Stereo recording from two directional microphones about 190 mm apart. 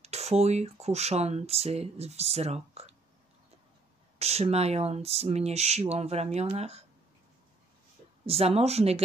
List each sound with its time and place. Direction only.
0.0 s speech: 35° right (ahead or behind)
4.2 s speech: 35° right (ahead or behind)
8.3 s speech: 30° right (ahead or behind)